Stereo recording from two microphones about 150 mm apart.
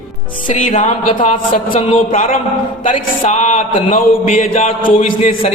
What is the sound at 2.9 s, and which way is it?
Music, 50° left (ahead or behind).